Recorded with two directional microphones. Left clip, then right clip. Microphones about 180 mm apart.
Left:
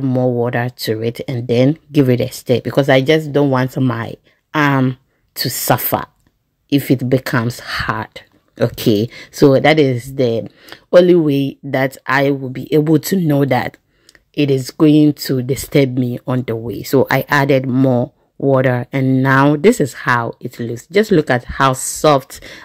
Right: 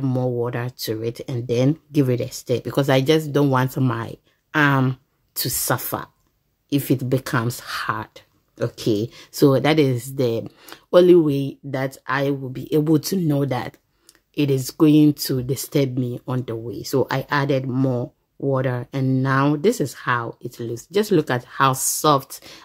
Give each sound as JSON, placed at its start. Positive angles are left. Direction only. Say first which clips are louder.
{"t": 0.0, "sound": "speech", "louder": "left 7 dB", "side_deg": 15}
{"t": 9.4, "sound": "speech", "louder": "left 6 dB", "side_deg": 15}
{"t": 11.2, "sound": "speech", "louder": "left 6 dB", "side_deg": 25}